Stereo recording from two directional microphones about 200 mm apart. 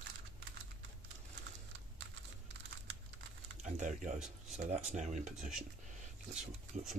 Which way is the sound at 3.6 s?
40° right (ahead or behind).